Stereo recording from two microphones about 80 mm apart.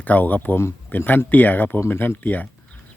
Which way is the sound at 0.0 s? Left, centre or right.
Left.